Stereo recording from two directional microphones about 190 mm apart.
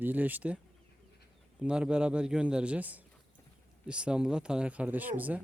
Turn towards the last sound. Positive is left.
turn(degrees=-10)  # may be behind; listen again after turning